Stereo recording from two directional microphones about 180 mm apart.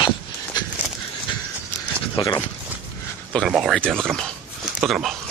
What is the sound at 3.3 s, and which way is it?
Speech, centre (ahead or behind).